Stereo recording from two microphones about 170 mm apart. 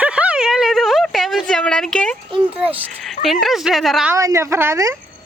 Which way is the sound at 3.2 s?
Centre (ahead or behind).